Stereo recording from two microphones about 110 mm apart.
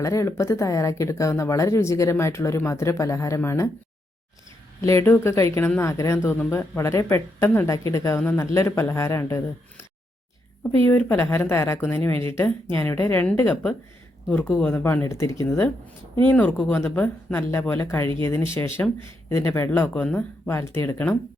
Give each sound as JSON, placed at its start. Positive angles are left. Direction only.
{"t": 0.0, "sound": "speech", "side_deg": 30}
{"t": 4.8, "sound": "speech", "side_deg": 25}
{"t": 10.8, "sound": "speech", "side_deg": 20}